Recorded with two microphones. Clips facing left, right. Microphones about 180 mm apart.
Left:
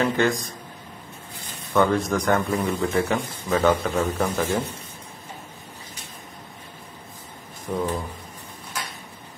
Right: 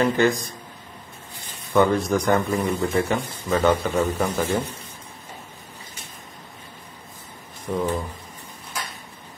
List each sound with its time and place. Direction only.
0.0 s a man's voice: centre (ahead or behind)
1.7 s a man's voice: centre (ahead or behind)
7.7 s a man's voice: centre (ahead or behind)